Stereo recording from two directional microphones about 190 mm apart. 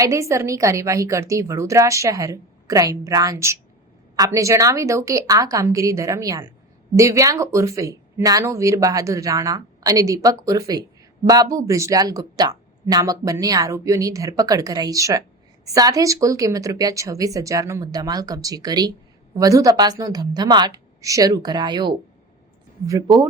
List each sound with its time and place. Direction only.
0.0 s a woman's voice: 15° right (ahead or behind)